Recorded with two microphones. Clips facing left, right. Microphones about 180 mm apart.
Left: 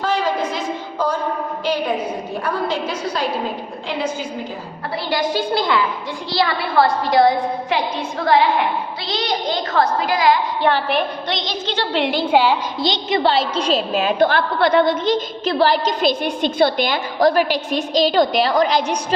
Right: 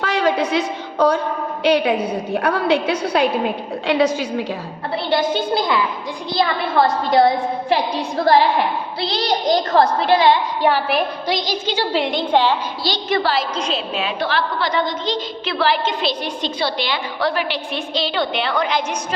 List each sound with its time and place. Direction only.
0.0 s a sound: 65° right (ahead or behind)
1.6 s a woman's voice: 70° right (ahead or behind)
3.8 s a woman's voice: 80° right
5.1 s a woman's voice: 20° right (ahead or behind)
7.7 s a woman's voice: 35° right (ahead or behind)
10.6 s a woman's voice: 5° right (ahead or behind); by 12.5 s 10° left (ahead or behind)
12.8 s a woman's voice: 20° left (ahead or behind)